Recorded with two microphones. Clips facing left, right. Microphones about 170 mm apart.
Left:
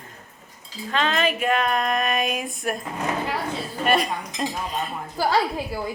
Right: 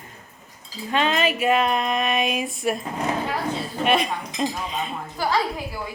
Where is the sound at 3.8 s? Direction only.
Centre (ahead or behind).